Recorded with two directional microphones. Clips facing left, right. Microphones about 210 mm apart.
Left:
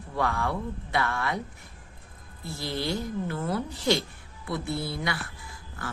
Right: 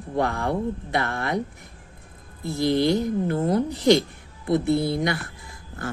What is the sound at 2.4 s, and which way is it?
Speech, 15° right (ahead or behind).